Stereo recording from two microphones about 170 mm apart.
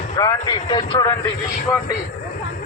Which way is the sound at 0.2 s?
25° left (ahead or behind).